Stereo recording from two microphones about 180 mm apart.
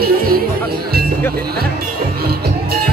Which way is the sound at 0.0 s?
55° right (ahead or behind).